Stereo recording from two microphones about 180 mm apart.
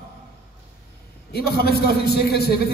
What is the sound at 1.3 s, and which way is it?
A man's voice, 60° left (ahead or behind).